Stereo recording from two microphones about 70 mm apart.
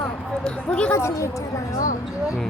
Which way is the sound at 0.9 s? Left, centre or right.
Left.